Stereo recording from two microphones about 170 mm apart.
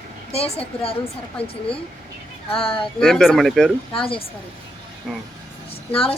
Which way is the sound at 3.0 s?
5° left (ahead or behind).